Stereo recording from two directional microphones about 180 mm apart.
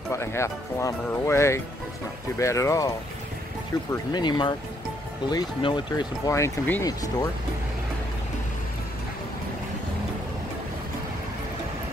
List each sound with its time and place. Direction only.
0.1 s speech: 15° left (ahead or behind)
4.1 s speech: 25° left (ahead or behind)